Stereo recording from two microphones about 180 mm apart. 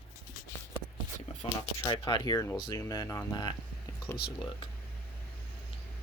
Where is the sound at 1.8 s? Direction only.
25° left (ahead or behind).